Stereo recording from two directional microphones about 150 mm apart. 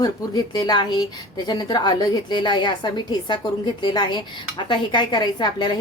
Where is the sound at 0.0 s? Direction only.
25° left (ahead or behind).